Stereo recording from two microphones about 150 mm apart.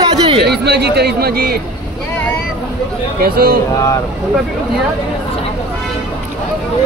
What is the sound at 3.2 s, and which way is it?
Speech, 90° right.